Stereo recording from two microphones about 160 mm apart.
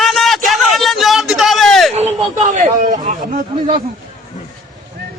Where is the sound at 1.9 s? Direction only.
45° right (ahead or behind).